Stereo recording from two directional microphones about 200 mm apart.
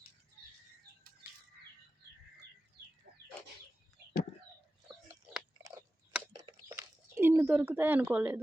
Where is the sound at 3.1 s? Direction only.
50° right (ahead or behind).